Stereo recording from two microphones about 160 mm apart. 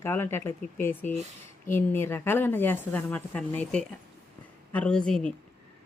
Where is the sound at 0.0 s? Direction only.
15° left (ahead or behind).